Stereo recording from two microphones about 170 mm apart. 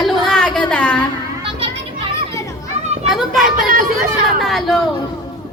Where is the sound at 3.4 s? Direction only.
50° right (ahead or behind).